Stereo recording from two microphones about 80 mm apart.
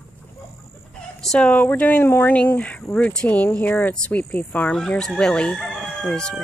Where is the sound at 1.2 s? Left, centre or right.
Centre.